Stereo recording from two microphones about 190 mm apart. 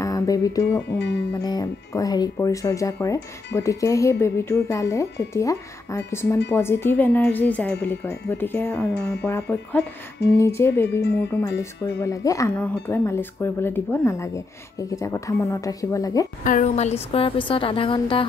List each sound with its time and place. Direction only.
0.0 s music: 20° left (ahead or behind)
0.9 s music: 65° left (ahead or behind)
1.4 s speech: 20° left (ahead or behind)
16.4 s speech: 45° left (ahead or behind); by 18.2 s 30° left (ahead or behind)